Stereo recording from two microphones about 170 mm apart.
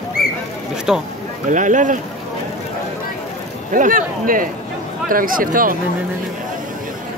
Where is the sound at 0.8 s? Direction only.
5° right (ahead or behind).